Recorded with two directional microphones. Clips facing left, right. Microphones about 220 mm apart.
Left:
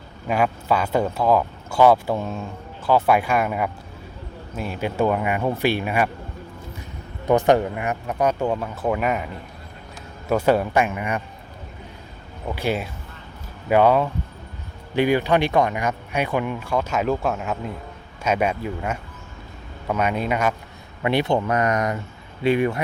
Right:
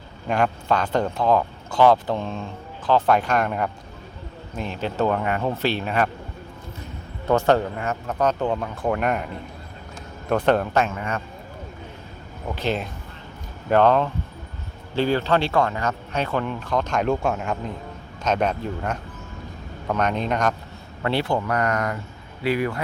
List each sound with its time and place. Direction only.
0.3 s speech: 5° left (ahead or behind)
7.3 s speech: 15° left (ahead or behind)
12.5 s speech: 10° left (ahead or behind)